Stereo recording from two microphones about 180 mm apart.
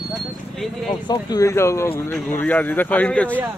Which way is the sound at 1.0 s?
20° left (ahead or behind).